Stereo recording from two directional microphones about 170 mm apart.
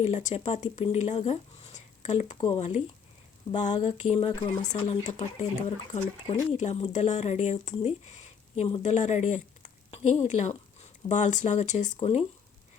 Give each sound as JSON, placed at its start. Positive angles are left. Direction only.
{"t": 0.0, "sound": "speech", "side_deg": 45}
{"t": 11.9, "sound": "speech", "side_deg": 35}